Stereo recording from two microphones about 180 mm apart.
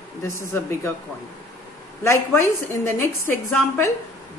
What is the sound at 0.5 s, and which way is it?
Speech, 15° left (ahead or behind).